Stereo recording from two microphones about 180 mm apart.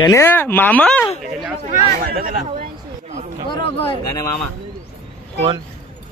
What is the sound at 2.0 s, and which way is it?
Speech, 50° right (ahead or behind).